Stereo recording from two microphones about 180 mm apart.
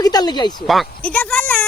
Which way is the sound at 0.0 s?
20° left (ahead or behind).